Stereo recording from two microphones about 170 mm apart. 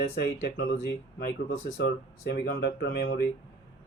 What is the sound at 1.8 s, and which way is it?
Speech, 65° left (ahead or behind).